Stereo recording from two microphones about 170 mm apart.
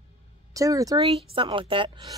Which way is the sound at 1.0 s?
35° right (ahead or behind).